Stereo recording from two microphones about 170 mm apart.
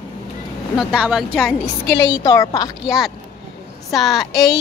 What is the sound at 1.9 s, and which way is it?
Speech, 90° left.